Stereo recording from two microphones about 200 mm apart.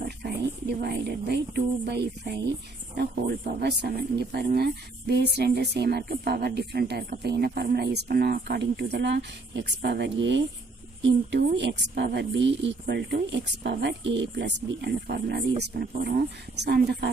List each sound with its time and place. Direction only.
0.2 s speech: 55° right (ahead or behind)